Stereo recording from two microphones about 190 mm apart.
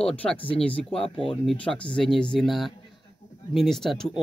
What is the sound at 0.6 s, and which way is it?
Speech, 5° left (ahead or behind).